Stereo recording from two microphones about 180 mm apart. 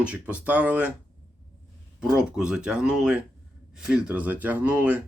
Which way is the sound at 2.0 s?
5° right (ahead or behind).